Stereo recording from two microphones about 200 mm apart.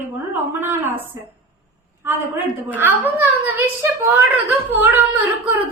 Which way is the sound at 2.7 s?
10° right (ahead or behind).